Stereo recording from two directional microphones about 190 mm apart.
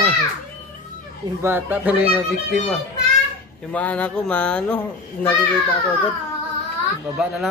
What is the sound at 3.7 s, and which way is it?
Speech, 5° left (ahead or behind).